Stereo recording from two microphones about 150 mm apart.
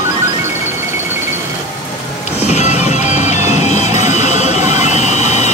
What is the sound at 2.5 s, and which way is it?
Music, 50° left (ahead or behind).